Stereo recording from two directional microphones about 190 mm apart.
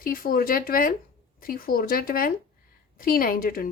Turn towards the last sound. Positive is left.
turn(degrees=50)  # may be behind; listen again after turning